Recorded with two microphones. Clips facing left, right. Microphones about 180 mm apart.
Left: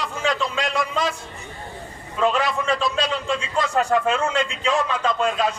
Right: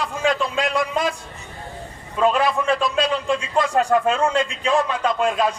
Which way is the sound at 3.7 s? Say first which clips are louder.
Right 1 dB; 35° right (ahead or behind).